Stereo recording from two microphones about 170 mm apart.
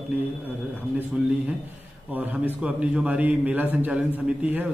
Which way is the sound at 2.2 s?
10° right (ahead or behind).